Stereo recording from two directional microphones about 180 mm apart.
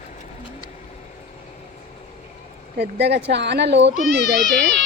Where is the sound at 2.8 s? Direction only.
70° right (ahead or behind).